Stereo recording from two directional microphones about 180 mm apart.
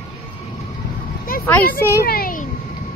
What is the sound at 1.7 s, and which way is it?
Speech, 15° left (ahead or behind).